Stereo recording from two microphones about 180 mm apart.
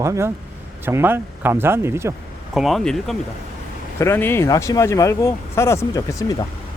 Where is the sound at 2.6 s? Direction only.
Centre (ahead or behind).